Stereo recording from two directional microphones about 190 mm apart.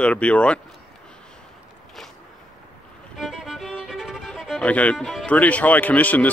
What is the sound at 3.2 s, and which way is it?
Speech, centre (ahead or behind).